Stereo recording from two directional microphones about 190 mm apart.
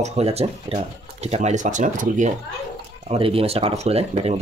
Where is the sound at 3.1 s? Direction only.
30° right (ahead or behind).